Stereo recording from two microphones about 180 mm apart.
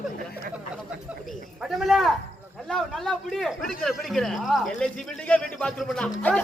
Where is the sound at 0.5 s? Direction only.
5° right (ahead or behind).